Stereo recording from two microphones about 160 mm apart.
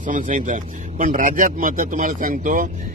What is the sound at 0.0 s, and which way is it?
Speech, 55° right (ahead or behind).